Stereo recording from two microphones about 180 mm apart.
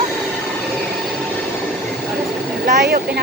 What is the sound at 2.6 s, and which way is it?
Speech, 55° right (ahead or behind).